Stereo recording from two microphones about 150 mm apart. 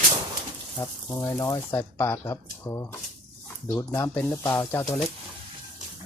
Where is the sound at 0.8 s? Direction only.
20° left (ahead or behind).